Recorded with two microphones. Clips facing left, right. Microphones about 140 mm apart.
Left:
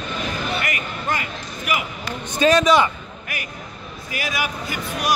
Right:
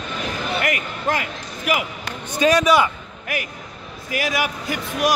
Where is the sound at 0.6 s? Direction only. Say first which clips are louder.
Right 3 dB; 70° right (ahead or behind).